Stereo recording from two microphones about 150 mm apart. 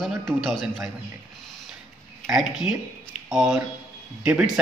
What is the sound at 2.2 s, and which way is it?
Speech, 5° right (ahead or behind).